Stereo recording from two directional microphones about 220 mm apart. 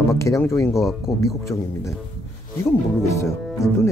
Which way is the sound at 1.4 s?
15° left (ahead or behind).